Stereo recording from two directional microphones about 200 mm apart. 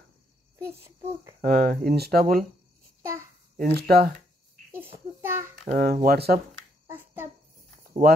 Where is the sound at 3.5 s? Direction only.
45° right (ahead or behind).